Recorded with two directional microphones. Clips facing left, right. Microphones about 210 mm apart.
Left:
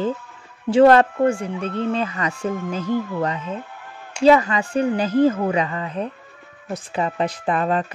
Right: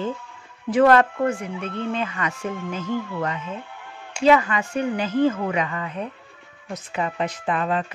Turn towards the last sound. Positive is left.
turn(degrees=40)  # may be behind; listen again after turning